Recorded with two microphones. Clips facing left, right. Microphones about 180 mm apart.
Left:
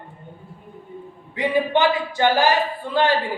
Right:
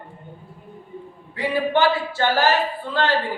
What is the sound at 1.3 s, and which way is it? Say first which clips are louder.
Speech: left 1 dB; 20° left (ahead or behind).